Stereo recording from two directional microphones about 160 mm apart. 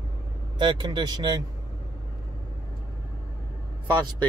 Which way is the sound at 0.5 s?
30° right (ahead or behind).